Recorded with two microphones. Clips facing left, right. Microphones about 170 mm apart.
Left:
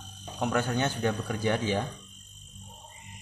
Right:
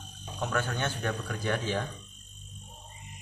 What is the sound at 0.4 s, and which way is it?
A man's voice, 15° left (ahead or behind).